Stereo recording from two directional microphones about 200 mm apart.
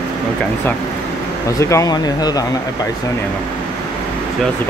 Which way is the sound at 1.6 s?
15° left (ahead or behind).